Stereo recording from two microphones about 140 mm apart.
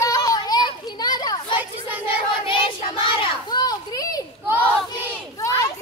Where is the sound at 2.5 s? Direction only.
40° left (ahead or behind).